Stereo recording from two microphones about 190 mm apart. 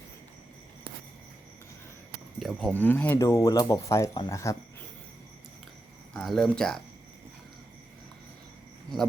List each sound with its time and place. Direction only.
2.4 s speech: centre (ahead or behind); by 4.5 s 15° left (ahead or behind)
6.1 s speech: centre (ahead or behind)